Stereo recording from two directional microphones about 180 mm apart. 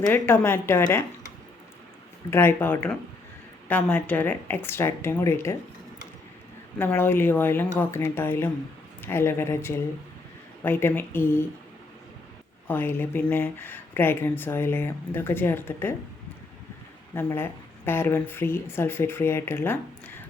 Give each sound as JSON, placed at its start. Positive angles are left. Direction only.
{"t": 0.1, "sound": "speech", "side_deg": 10}
{"t": 2.3, "sound": "speech", "side_deg": 15}
{"t": 6.7, "sound": "speech", "side_deg": 10}
{"t": 12.6, "sound": "speech", "side_deg": 10}
{"t": 17.2, "sound": "speech", "side_deg": 10}